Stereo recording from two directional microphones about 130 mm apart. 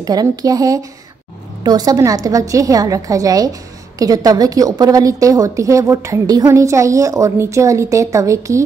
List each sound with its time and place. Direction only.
0.0 s a woman's voice: 30° right (ahead or behind)